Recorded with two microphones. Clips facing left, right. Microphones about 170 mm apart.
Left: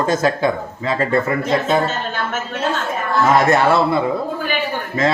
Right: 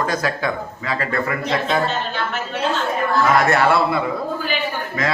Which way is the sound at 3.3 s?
20° left (ahead or behind).